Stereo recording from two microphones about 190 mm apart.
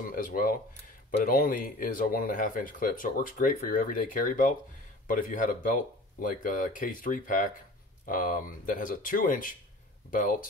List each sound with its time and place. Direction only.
0.0 s speech: 45° left (ahead or behind)